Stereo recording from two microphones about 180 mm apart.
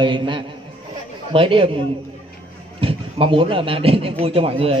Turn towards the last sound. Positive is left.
turn(degrees=-30)  # may be behind; listen again after turning